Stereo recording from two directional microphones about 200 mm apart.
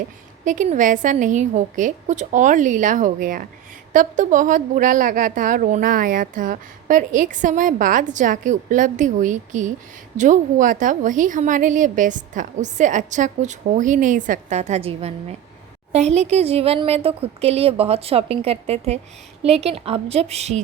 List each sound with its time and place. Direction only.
0.4 s a woman's voice: 40° right (ahead or behind)